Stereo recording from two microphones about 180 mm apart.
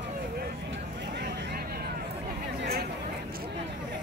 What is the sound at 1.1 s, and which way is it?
Vehicle, 65° right (ahead or behind).